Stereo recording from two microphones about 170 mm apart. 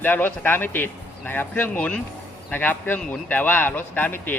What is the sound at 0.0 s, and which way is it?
Speech, 10° left (ahead or behind).